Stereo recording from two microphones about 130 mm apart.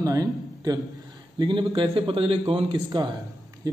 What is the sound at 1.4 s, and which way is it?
A man's voice, 35° right (ahead or behind).